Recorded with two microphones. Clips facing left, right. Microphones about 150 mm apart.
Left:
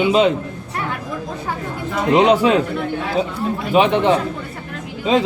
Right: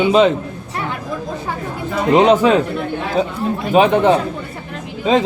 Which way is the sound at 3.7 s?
40° right (ahead or behind).